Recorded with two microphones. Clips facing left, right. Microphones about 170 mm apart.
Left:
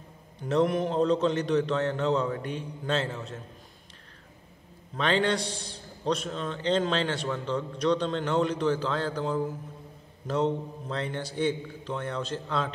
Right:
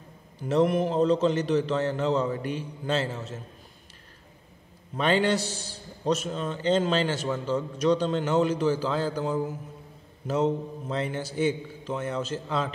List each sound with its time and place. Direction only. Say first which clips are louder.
0.4 s a man's voice: right 2 dB; 5° right (ahead or behind)
4.9 s a man's voice: right 2 dB; 5° right (ahead or behind)